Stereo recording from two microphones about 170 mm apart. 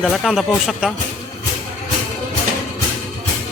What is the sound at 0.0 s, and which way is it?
Speech, centre (ahead or behind).